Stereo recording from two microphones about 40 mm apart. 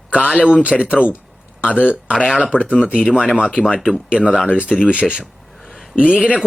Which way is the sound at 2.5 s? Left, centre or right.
Left.